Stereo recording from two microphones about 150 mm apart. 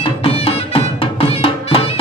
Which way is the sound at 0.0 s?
40° left (ahead or behind).